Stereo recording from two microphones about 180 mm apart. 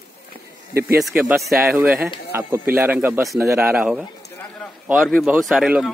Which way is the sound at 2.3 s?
15° right (ahead or behind).